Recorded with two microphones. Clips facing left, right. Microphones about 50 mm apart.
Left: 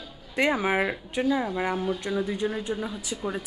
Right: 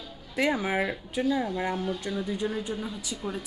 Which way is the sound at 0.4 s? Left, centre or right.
Centre.